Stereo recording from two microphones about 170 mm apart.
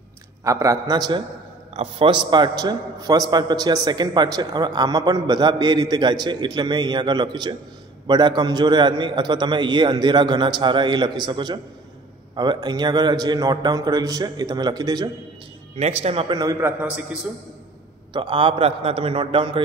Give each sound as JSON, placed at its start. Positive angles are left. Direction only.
{"t": 0.4, "sound": "a man's voice", "side_deg": -20}
{"t": 16.0, "sound": "a man's voice", "side_deg": -35}
{"t": 16.3, "sound": "a man's voice", "side_deg": -20}
{"t": 16.8, "sound": "a man's voice", "side_deg": -5}
{"t": 18.1, "sound": "a man's voice", "side_deg": -30}